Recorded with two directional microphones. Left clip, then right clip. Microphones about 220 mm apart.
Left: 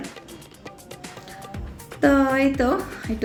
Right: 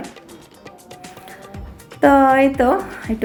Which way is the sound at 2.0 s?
Centre (ahead or behind).